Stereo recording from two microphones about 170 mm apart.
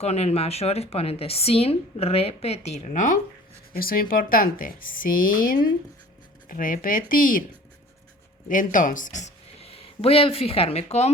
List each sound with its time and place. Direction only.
0.0 s speech: 40° left (ahead or behind)
3.7 s speech: 60° left (ahead or behind)
8.4 s speech: 50° left (ahead or behind)